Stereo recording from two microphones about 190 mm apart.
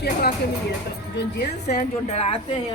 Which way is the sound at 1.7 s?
35° left (ahead or behind).